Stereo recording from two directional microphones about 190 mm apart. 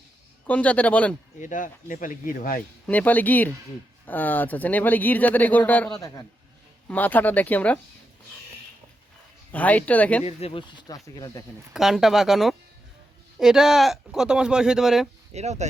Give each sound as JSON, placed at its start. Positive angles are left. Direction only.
{"t": 0.4, "sound": "speech", "side_deg": 5}
{"t": 1.4, "sound": "speech", "side_deg": 40}
{"t": 2.8, "sound": "speech", "side_deg": 10}
{"t": 9.5, "sound": "speech", "side_deg": 10}
{"t": 10.2, "sound": "speech", "side_deg": 30}
{"t": 11.7, "sound": "speech", "side_deg": 0}
{"t": 15.3, "sound": "speech", "side_deg": -35}